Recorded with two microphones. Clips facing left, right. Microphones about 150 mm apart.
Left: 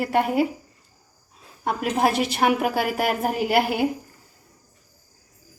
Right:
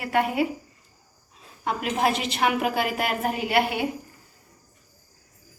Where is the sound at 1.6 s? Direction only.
45° left (ahead or behind).